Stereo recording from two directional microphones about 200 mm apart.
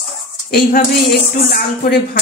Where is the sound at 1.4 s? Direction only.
45° left (ahead or behind).